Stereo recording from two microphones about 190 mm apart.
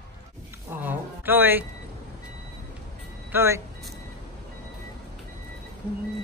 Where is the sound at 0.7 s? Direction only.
10° right (ahead or behind).